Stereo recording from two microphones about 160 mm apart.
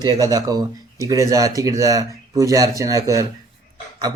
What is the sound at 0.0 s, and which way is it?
A man's voice, 25° right (ahead or behind).